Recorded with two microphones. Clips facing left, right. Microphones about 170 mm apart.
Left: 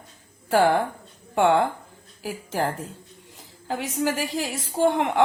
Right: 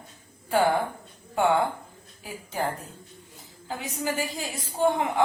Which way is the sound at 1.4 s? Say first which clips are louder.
Left 3 dB; 90° left.